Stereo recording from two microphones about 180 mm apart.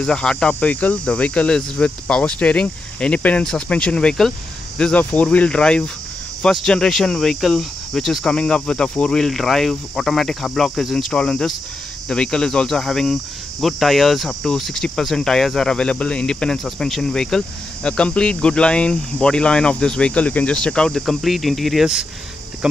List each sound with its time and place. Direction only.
0.0 s cricket: 5° left (ahead or behind)